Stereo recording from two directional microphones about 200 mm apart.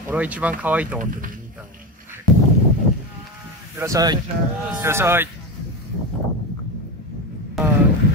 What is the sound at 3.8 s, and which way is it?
Speech, 15° right (ahead or behind).